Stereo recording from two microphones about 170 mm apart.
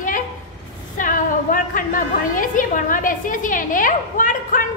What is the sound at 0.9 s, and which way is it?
A woman's voice, 50° left (ahead or behind).